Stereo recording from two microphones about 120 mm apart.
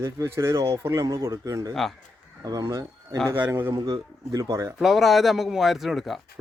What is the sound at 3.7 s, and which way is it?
Speech, 35° right (ahead or behind).